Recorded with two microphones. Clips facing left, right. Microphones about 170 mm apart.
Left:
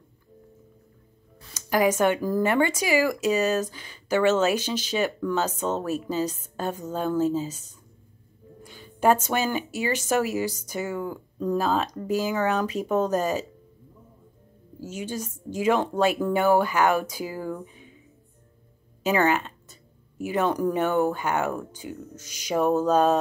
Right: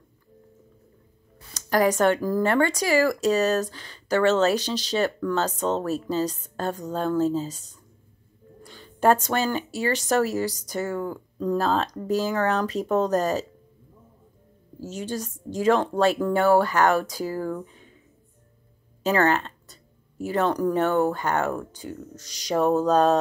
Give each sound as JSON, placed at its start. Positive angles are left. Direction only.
{"t": 1.5, "sound": "a sound", "side_deg": 15}
{"t": 2.0, "sound": "speech", "side_deg": 10}
{"t": 5.6, "sound": "music", "side_deg": 5}
{"t": 5.9, "sound": "speech", "side_deg": 15}
{"t": 8.6, "sound": "speech", "side_deg": 10}
{"t": 12.4, "sound": "music", "side_deg": 5}
{"t": 15.6, "sound": "speech", "side_deg": 10}
{"t": 19.0, "sound": "speech", "side_deg": 10}
{"t": 22.2, "sound": "music", "side_deg": 5}